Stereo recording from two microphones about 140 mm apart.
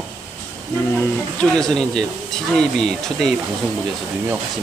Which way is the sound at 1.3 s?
5° left (ahead or behind).